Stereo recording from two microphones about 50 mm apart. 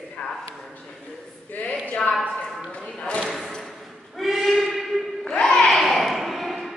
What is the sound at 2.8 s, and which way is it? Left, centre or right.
Speech, centre.